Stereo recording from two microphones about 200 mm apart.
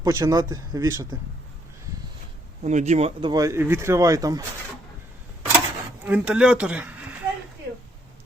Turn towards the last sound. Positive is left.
turn(degrees=-10)  # may be behind; listen again after turning